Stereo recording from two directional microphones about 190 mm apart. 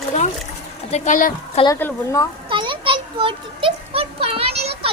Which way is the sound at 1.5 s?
20° left (ahead or behind).